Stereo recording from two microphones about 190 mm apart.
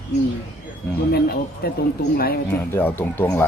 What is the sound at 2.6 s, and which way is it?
Speech, 10° left (ahead or behind).